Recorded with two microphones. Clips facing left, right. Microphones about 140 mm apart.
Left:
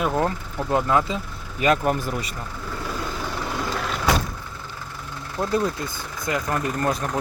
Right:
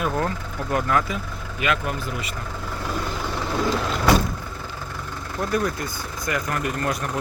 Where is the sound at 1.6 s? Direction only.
35° left (ahead or behind).